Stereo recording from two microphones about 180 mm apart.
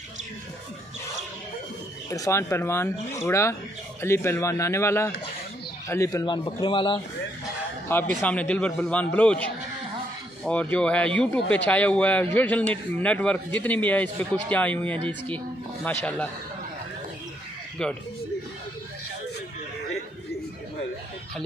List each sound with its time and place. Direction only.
2.0 s a man's voice: 15° left (ahead or behind)
8.2 s a man's voice: 10° left (ahead or behind)